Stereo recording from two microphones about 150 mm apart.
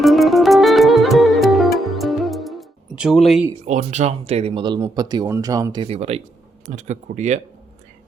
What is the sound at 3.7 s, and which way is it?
Speech, 50° right (ahead or behind).